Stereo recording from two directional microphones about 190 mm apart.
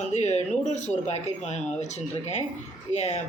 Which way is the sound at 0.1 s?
35° left (ahead or behind).